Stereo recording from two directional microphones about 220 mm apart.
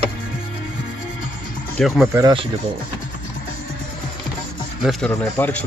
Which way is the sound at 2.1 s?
20° right (ahead or behind).